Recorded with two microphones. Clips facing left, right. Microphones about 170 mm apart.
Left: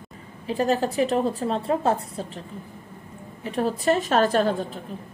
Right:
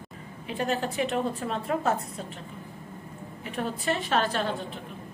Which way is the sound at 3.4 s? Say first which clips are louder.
Left 7 dB; 35° left (ahead or behind).